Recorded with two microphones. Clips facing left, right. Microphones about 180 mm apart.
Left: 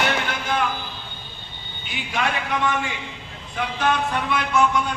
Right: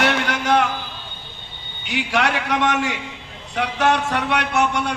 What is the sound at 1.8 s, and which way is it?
A man's voice, 80° right.